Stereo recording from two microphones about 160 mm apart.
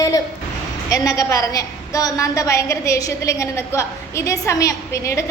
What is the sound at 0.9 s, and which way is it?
A woman's voice, 20° left (ahead or behind).